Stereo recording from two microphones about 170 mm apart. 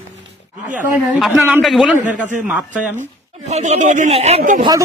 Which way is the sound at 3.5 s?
40° right (ahead or behind).